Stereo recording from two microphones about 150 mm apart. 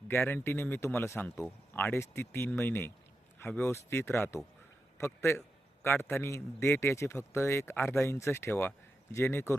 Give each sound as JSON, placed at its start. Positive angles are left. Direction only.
{"t": 0.2, "sound": "a man's voice", "side_deg": 15}